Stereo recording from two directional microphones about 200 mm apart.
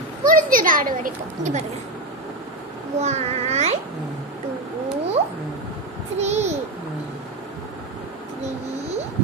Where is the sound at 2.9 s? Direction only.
35° right (ahead or behind).